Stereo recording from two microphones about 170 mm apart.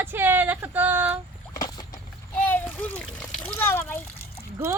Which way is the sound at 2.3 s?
10° left (ahead or behind).